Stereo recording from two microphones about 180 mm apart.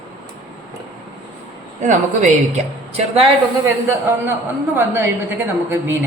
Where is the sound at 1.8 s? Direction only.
45° right (ahead or behind).